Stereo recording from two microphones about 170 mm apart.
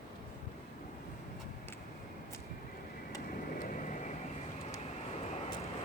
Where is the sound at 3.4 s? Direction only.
50° left (ahead or behind).